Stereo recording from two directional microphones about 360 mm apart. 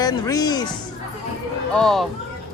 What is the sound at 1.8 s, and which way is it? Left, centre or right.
Speech, centre.